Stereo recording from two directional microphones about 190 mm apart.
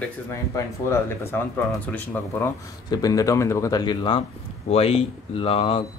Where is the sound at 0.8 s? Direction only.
15° left (ahead or behind).